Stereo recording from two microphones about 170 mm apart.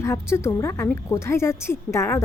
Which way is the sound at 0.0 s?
15° left (ahead or behind).